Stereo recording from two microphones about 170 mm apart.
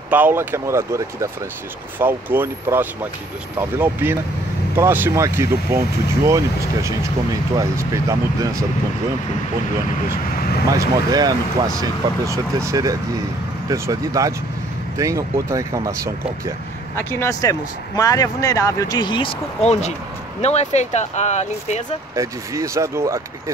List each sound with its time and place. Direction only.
0.1 s speech: 10° right (ahead or behind)
10.7 s speech: 20° right (ahead or behind)
16.9 s speech: 15° left (ahead or behind); by 21.8 s 40° left (ahead or behind)
22.1 s speech: 20° right (ahead or behind)